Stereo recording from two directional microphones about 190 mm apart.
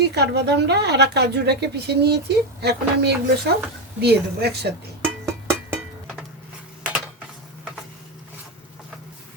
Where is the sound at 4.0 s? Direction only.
60° right (ahead or behind).